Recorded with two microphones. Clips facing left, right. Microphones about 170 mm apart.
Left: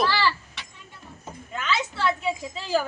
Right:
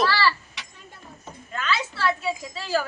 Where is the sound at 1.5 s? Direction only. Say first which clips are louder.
Even; 20° left (ahead or behind).